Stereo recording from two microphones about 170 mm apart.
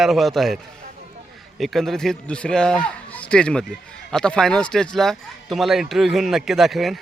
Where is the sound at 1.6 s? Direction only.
Centre (ahead or behind).